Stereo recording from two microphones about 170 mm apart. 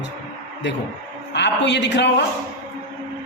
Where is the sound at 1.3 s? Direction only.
90° left.